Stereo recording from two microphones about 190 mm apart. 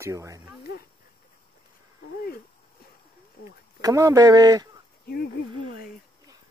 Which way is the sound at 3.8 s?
15° right (ahead or behind).